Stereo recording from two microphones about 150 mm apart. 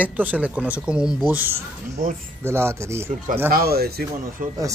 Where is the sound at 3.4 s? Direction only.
85° right.